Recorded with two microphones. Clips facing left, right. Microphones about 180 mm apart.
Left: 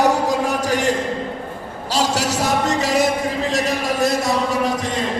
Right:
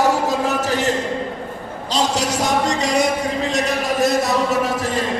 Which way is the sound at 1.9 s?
10° left (ahead or behind).